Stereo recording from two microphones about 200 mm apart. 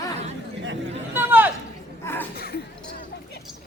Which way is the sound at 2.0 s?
10° left (ahead or behind).